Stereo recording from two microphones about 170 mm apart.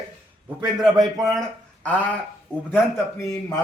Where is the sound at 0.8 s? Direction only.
Centre (ahead or behind).